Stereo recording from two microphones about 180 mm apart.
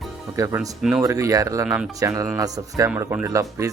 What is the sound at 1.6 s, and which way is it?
Speech, 5° right (ahead or behind).